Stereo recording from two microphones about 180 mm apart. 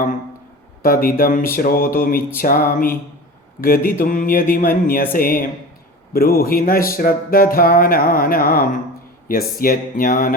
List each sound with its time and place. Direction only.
0.8 s speech: 55° left (ahead or behind)